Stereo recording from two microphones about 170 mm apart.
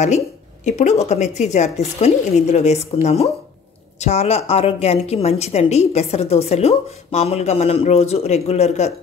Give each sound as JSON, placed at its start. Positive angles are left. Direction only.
{"t": 0.7, "sound": "a woman's voice", "side_deg": 40}